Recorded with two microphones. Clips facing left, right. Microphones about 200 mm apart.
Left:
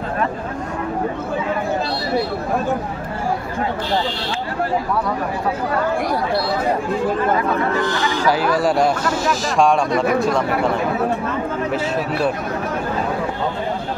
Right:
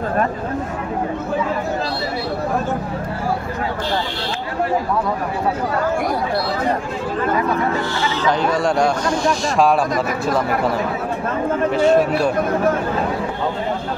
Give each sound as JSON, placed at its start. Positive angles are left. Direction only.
{"t": 7.8, "sound": "a man's voice", "side_deg": 15}
{"t": 11.7, "sound": "a man's voice", "side_deg": 5}